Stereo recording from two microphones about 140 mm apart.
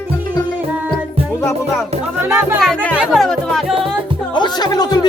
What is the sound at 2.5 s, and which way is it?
Music, 5° left (ahead or behind).